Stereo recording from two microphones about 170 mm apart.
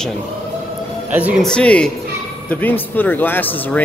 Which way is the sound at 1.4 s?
5° left (ahead or behind).